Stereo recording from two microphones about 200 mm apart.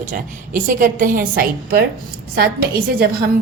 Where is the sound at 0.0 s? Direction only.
40° right (ahead or behind).